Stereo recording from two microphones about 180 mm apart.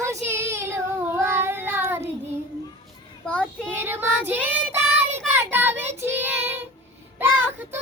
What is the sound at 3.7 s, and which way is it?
Child singing, 10° right (ahead or behind).